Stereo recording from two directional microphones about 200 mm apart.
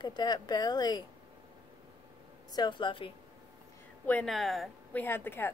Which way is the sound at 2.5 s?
20° left (ahead or behind).